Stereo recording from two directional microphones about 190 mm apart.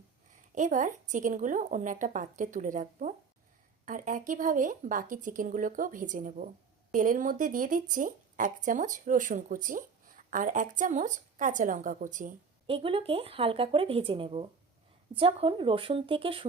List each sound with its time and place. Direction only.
0.5 s a woman's voice: 40° right (ahead or behind)
12.6 s speech: 30° right (ahead or behind)